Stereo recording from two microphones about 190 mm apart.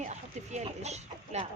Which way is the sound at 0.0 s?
35° right (ahead or behind).